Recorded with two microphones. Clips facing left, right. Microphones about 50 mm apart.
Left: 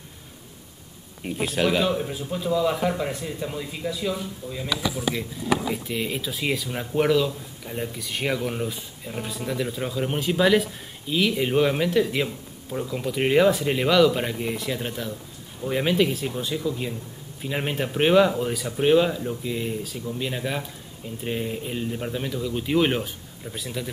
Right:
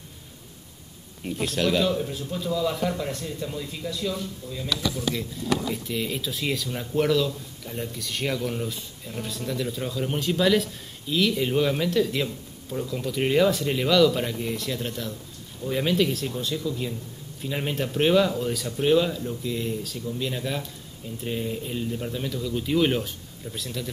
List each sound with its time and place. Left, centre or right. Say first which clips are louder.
1.2 s speech: left 2 dB; centre